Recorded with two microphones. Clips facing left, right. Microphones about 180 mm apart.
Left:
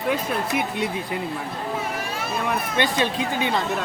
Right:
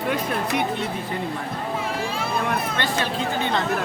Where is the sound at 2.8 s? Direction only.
15° left (ahead or behind).